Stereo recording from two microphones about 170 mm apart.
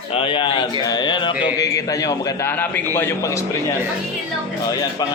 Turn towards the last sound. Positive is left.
turn(degrees=20)  # may be behind; listen again after turning